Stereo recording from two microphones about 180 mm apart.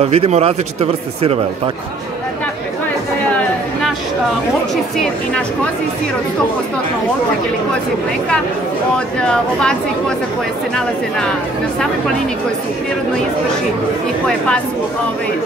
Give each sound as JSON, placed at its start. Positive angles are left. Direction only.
{"t": 0.0, "sound": "speech", "side_deg": -35}
{"t": 8.9, "sound": "speech", "side_deg": 5}